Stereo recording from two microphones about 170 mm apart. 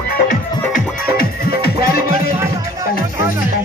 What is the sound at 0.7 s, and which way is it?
Music, 65° left (ahead or behind).